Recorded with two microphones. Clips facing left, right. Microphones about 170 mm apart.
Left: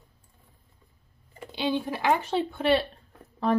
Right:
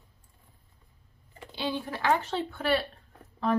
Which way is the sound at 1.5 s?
15° left (ahead or behind).